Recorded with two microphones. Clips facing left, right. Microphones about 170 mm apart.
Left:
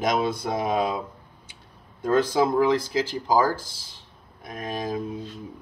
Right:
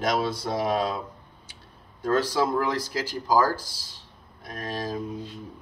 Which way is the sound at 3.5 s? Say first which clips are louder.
Even; 50° left (ahead or behind).